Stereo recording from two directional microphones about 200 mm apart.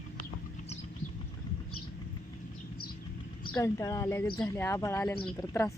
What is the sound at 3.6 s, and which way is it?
Speech, 15° left (ahead or behind).